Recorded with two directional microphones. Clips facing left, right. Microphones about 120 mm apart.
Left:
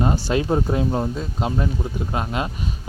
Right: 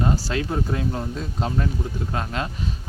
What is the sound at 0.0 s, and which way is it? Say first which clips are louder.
Speech: left 3 dB; 25° left (ahead or behind).